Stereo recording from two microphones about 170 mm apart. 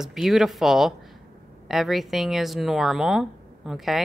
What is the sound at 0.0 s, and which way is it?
Speech, centre (ahead or behind).